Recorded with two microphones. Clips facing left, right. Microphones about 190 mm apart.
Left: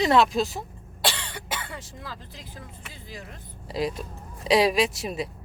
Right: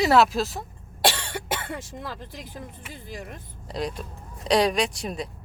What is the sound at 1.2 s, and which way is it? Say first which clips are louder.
Cough: right 4 dB; 55° right (ahead or behind).